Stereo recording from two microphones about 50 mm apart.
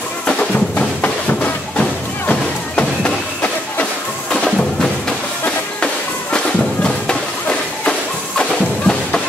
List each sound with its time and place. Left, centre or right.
0.3 s music: left
6.3 s music: centre